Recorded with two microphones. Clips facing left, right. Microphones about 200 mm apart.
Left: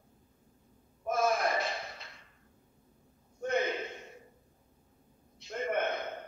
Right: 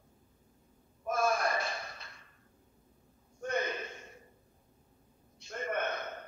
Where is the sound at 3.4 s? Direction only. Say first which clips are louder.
Left 3 dB; 20° left (ahead or behind).